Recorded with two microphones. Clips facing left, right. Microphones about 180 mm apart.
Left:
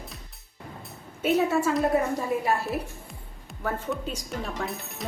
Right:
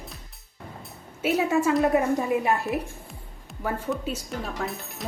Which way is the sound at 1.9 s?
20° right (ahead or behind).